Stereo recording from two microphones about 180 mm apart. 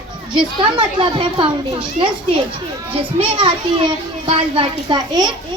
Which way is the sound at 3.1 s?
30° right (ahead or behind).